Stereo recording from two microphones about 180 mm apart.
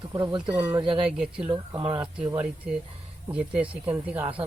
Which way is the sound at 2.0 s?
10° right (ahead or behind).